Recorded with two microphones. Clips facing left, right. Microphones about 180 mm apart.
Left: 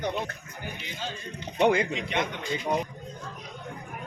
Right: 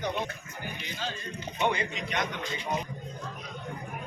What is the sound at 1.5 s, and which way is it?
Speech, 90° left.